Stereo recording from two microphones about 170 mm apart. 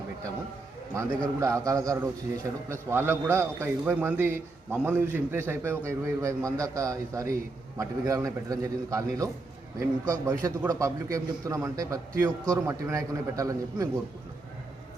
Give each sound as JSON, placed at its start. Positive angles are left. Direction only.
{"t": 1.4, "sound": "a man's voice", "side_deg": -20}